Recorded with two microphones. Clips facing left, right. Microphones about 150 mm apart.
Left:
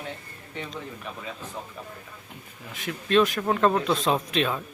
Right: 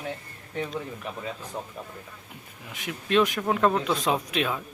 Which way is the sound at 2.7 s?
15° right (ahead or behind).